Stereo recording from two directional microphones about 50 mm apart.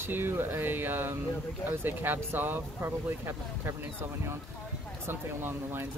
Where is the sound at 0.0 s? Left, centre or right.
Right.